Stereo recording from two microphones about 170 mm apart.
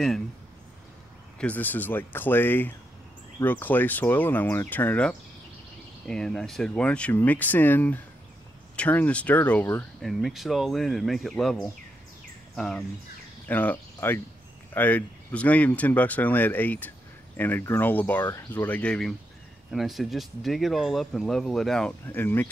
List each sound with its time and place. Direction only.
1.4 s speech: 10° left (ahead or behind)
10.0 s speech: centre (ahead or behind)